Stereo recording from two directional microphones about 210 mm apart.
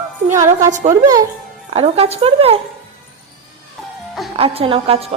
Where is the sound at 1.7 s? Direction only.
30° right (ahead or behind).